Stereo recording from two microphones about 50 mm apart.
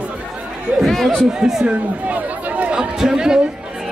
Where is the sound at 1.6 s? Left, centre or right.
Right.